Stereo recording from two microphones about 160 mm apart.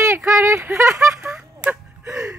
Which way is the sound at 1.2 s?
5° right (ahead or behind).